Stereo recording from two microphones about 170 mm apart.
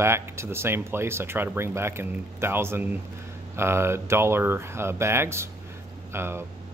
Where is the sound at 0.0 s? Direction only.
15° right (ahead or behind).